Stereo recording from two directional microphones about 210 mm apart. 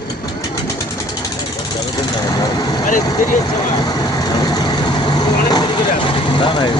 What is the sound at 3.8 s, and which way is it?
Vehicle, 20° left (ahead or behind).